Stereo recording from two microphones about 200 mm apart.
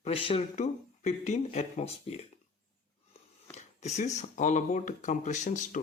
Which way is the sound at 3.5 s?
35° left (ahead or behind).